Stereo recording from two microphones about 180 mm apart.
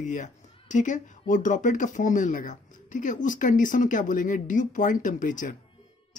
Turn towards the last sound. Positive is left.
turn(degrees=45)  # may be behind; listen again after turning